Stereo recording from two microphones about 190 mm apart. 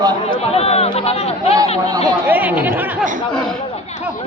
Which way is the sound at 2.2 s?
10° right (ahead or behind).